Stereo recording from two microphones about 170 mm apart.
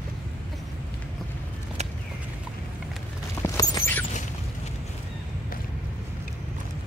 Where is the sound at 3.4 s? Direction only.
20° left (ahead or behind).